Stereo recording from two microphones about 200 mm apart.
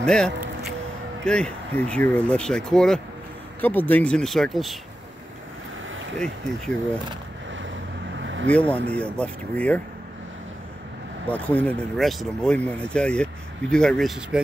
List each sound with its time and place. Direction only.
0.0 s speech: 5° left (ahead or behind)
8.2 s vehicle: 70° right (ahead or behind)
8.5 s speech: 5° left (ahead or behind)
11.2 s speech: 5° left (ahead or behind)